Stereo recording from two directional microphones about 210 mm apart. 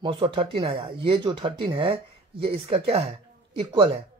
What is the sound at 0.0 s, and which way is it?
Speech, 25° right (ahead or behind).